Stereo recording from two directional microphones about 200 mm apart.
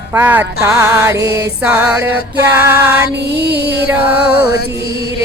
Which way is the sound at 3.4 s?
55° right (ahead or behind).